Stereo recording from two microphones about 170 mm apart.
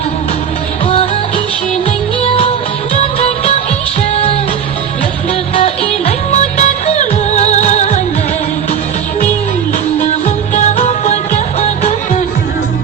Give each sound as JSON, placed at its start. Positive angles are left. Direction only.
{"t": 2.9, "sound": "music", "side_deg": 40}
{"t": 5.5, "sound": "music", "side_deg": 35}
{"t": 10.0, "sound": "music", "side_deg": 45}